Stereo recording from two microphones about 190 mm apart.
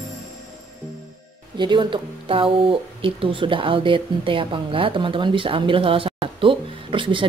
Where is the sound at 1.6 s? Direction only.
25° right (ahead or behind).